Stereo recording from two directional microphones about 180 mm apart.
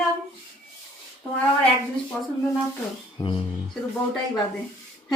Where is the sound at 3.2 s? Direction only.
20° left (ahead or behind).